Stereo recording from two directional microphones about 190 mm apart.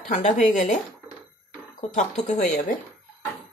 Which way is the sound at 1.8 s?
35° left (ahead or behind).